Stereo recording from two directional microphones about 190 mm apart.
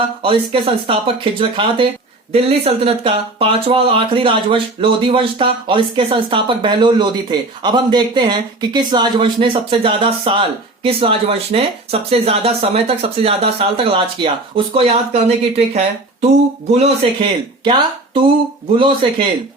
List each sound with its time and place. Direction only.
0.2 s speech: 30° right (ahead or behind)